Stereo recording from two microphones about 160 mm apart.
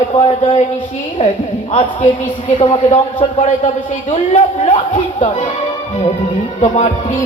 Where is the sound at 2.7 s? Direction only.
40° left (ahead or behind).